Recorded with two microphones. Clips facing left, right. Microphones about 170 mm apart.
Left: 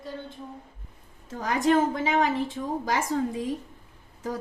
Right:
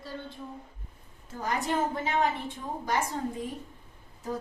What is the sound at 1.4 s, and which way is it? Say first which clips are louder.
A woman's voice: left 7 dB; 90° left.